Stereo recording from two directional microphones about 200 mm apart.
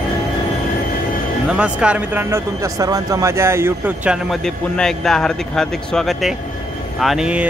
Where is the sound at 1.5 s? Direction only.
5° right (ahead or behind).